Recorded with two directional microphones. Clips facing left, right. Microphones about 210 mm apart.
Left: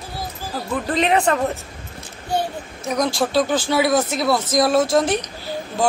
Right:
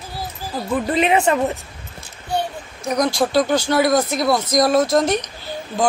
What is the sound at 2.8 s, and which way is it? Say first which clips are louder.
A man's voice: right 2 dB; centre (ahead or behind).